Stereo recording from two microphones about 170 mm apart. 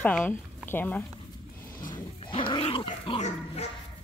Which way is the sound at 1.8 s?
25° left (ahead or behind).